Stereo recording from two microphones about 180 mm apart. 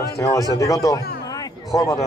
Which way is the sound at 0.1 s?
20° left (ahead or behind).